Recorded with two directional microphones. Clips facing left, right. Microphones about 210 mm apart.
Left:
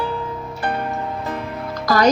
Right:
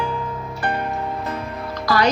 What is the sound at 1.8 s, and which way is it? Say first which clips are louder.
Music: left 3 dB; 45° left (ahead or behind).